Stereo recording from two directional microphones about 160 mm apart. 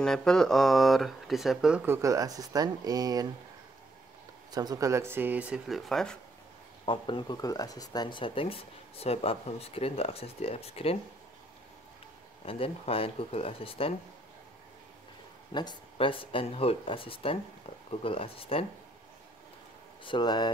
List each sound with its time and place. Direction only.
0.0 s speech: 5° left (ahead or behind)
1.9 s speech: 20° right (ahead or behind)
4.5 s speech: 25° right (ahead or behind); by 6.1 s centre (ahead or behind)
6.9 s speech: 30° left (ahead or behind)
12.4 s speech: 35° left (ahead or behind)
15.5 s speech: 25° left (ahead or behind)
20.0 s speech: 30° left (ahead or behind)